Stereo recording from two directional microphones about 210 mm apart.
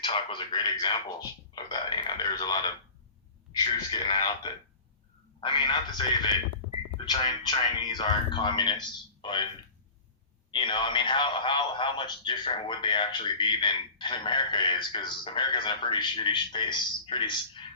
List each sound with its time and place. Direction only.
0.0 s speech: 25° left (ahead or behind)
3.5 s speech: 20° left (ahead or behind)
5.4 s speech: 20° left (ahead or behind)
10.5 s speech: 25° left (ahead or behind)